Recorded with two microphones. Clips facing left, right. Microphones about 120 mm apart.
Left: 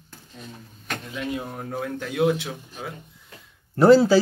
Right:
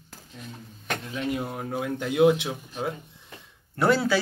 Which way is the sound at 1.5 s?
10° right (ahead or behind).